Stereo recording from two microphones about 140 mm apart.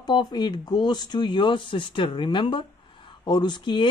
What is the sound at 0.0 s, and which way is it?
Speech, 30° left (ahead or behind).